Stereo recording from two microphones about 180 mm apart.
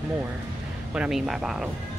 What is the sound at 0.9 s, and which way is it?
Speech, 5° right (ahead or behind).